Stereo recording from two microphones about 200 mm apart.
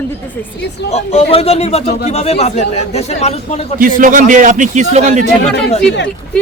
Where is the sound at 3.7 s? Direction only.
45° right (ahead or behind).